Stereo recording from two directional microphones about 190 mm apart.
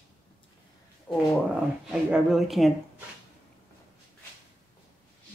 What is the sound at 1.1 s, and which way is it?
Speech, 10° left (ahead or behind).